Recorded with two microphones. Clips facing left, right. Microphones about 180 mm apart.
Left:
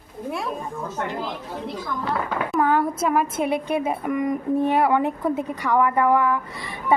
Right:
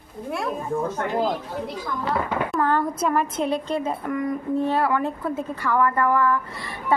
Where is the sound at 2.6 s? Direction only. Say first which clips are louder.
Left 3 dB; 10° left (ahead or behind).